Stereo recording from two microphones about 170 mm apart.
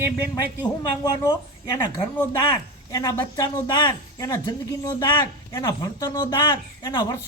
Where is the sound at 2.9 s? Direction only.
20° left (ahead or behind).